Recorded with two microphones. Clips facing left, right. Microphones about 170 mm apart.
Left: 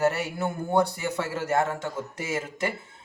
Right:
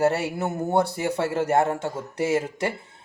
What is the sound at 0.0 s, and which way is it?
Speech, 30° right (ahead or behind).